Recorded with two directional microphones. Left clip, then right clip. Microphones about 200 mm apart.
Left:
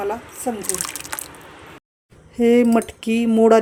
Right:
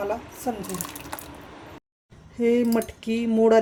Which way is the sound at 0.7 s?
5° right (ahead or behind).